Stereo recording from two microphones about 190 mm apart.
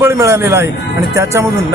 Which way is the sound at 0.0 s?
15° right (ahead or behind).